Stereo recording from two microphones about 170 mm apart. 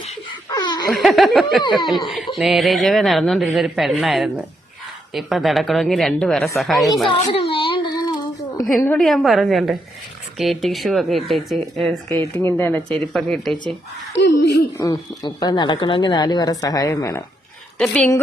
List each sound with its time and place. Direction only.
0.0 s laughter: 25° left (ahead or behind)
0.9 s speech: centre (ahead or behind)
7.1 s child singing: 30° left (ahead or behind)
8.8 s speech: 5° left (ahead or behind)
14.1 s speech: 75° left (ahead or behind)
14.8 s speech: 20° left (ahead or behind)
17.7 s speech: 5° left (ahead or behind)